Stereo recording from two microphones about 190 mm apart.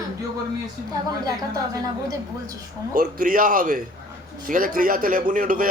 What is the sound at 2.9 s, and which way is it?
Speech, 45° right (ahead or behind).